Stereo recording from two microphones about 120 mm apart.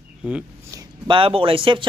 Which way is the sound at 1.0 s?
45° right (ahead or behind).